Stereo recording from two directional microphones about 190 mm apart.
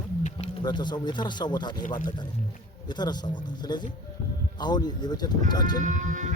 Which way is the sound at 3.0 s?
20° left (ahead or behind).